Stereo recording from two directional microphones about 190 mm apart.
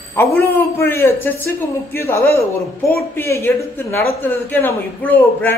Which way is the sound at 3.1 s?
15° left (ahead or behind).